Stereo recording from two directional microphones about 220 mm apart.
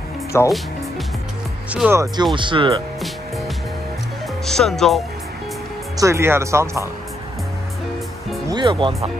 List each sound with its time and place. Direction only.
0.3 s speech: 10° left (ahead or behind)
1.7 s speech: 10° right (ahead or behind)
2.3 s speech: 20° right (ahead or behind)
4.5 s speech: centre (ahead or behind)
5.9 s speech: 15° right (ahead or behind)
8.5 s speech: 20° right (ahead or behind)